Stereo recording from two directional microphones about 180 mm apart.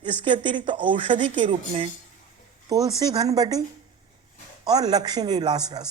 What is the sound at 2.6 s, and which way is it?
Speech, 20° right (ahead or behind).